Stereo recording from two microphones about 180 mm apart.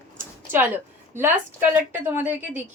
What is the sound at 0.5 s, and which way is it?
A woman's voice, 10° right (ahead or behind).